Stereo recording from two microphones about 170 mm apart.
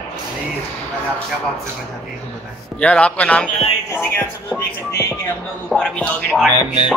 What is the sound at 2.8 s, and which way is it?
Speech, 5° left (ahead or behind).